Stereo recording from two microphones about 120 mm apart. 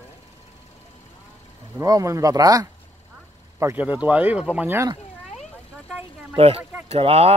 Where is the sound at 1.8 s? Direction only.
30° right (ahead or behind).